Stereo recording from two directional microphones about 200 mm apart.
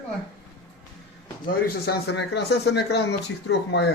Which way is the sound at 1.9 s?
55° left (ahead or behind).